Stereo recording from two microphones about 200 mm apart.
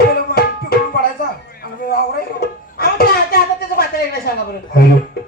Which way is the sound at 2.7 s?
50° left (ahead or behind).